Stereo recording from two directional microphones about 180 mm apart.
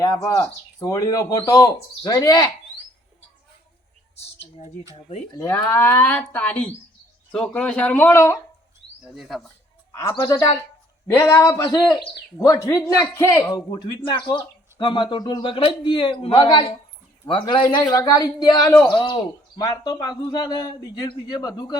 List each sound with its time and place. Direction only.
0.0 s speech: 20° left (ahead or behind)
4.1 s speech: 35° left (ahead or behind)
5.4 s speech: 20° left (ahead or behind)
9.0 s speech: centre (ahead or behind)
9.9 s speech: 15° left (ahead or behind)